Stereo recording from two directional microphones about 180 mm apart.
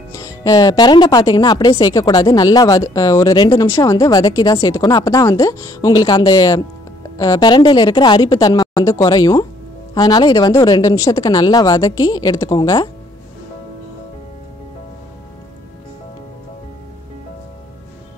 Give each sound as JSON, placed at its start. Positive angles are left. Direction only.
{"t": 0.1, "sound": "speech", "side_deg": 20}